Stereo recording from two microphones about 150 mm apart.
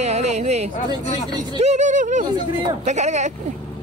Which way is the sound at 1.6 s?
50° right (ahead or behind).